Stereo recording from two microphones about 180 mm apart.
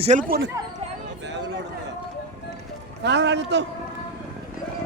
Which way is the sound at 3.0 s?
75° right (ahead or behind).